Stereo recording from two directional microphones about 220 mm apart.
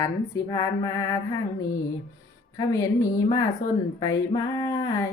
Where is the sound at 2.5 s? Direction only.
15° left (ahead or behind).